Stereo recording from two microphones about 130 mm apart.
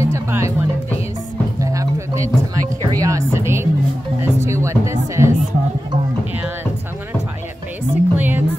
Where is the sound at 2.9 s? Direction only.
25° right (ahead or behind).